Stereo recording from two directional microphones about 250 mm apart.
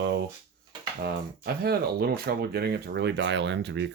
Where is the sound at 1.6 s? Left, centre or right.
Right.